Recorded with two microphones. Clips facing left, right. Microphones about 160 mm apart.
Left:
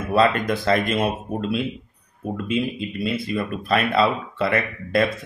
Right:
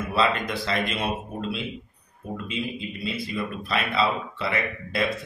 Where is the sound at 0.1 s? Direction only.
50° left (ahead or behind).